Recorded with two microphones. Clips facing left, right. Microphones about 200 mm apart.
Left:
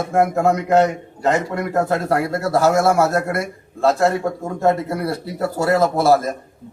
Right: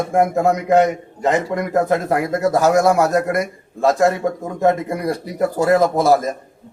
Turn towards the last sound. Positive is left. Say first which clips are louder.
# right 1 dB
turn(degrees=-15)  # may be behind; listen again after turning